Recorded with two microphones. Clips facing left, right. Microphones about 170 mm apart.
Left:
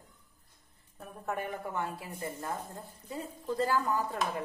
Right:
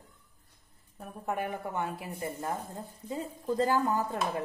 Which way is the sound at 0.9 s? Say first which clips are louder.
Right 2 dB; 10° right (ahead or behind).